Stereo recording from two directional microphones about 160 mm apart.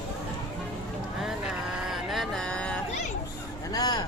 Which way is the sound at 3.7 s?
25° left (ahead or behind).